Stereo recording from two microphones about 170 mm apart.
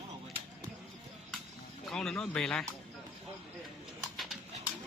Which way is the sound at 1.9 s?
Centre (ahead or behind).